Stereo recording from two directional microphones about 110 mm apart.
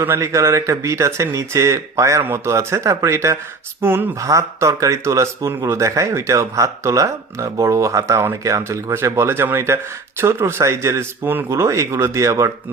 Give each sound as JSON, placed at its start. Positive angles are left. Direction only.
{"t": 0.0, "sound": "speech", "side_deg": -25}